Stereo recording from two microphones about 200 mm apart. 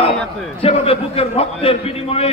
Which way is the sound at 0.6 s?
30° left (ahead or behind).